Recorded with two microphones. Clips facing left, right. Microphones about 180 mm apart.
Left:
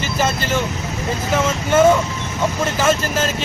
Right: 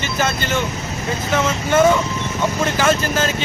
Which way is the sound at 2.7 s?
5° left (ahead or behind).